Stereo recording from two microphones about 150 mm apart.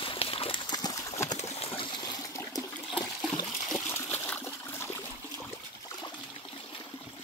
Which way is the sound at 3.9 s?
15° left (ahead or behind).